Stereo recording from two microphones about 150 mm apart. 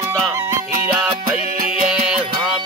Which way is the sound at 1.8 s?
5° right (ahead or behind).